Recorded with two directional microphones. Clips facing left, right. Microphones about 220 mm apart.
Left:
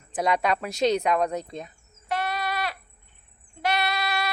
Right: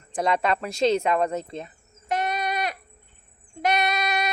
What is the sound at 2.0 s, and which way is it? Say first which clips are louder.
Sheep: right 2 dB; 20° right (ahead or behind).